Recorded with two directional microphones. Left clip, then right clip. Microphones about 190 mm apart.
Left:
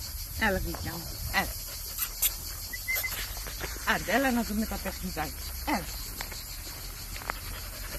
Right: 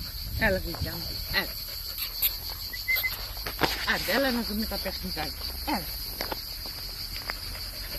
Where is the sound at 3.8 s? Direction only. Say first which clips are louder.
Left 3 dB; 45° left (ahead or behind).